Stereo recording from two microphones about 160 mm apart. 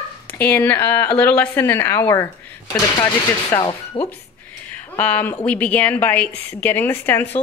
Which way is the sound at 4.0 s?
35° left (ahead or behind).